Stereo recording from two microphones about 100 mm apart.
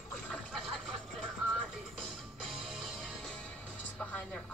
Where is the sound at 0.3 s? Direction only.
Centre (ahead or behind).